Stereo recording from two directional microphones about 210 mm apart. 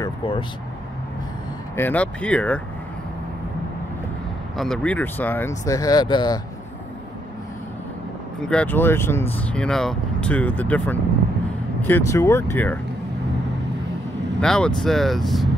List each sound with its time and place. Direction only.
0.0 s vehicle: 25° left (ahead or behind)
1.8 s speech: 5° left (ahead or behind)
4.6 s speech: 5° left (ahead or behind); by 6.4 s 20° left (ahead or behind)
8.4 s speech: 5° left (ahead or behind)
14.4 s speech: 5° left (ahead or behind)